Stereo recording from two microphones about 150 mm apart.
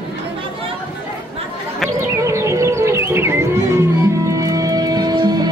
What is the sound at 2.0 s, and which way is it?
Music, 20° right (ahead or behind).